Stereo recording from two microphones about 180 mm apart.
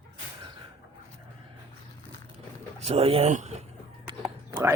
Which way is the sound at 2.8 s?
35° right (ahead or behind).